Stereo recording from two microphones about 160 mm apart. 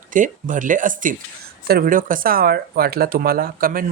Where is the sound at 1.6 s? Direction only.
65° right (ahead or behind).